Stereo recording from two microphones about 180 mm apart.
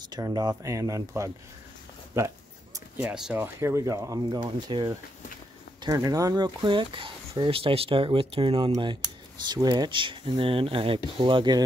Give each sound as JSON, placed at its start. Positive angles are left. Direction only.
{"t": 0.1, "sound": "speech", "side_deg": -20}
{"t": 2.1, "sound": "a sound", "side_deg": -15}
{"t": 3.5, "sound": "speech", "side_deg": -15}